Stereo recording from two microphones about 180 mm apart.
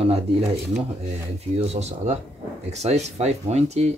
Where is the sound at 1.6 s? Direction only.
35° right (ahead or behind).